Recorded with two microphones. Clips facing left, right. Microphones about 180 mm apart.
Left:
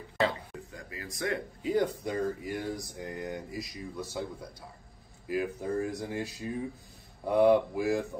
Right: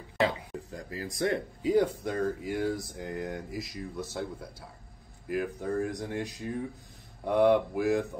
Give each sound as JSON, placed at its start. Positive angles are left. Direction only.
{"t": 0.7, "sound": "speech", "side_deg": -35}
{"t": 1.6, "sound": "speech", "side_deg": -10}
{"t": 5.3, "sound": "speech", "side_deg": 5}